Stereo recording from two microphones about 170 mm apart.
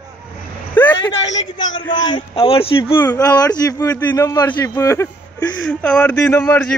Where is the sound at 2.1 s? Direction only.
35° left (ahead or behind).